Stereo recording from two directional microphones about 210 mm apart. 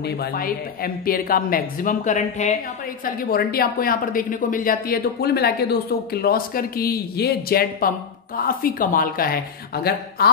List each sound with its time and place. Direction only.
0.0 s speech: 45° left (ahead or behind)
3.3 s speech: 45° left (ahead or behind)